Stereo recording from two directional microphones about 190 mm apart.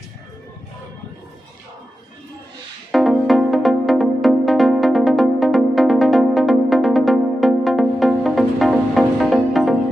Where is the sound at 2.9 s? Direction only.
Centre (ahead or behind).